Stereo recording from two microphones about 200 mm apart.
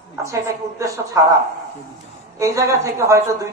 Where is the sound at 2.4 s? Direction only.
15° right (ahead or behind).